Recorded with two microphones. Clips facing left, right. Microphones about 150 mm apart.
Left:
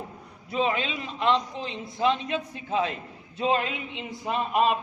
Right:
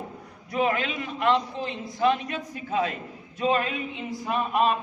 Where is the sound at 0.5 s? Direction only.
20° left (ahead or behind).